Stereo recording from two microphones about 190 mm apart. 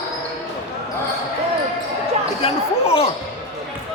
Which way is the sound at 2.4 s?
30° left (ahead or behind).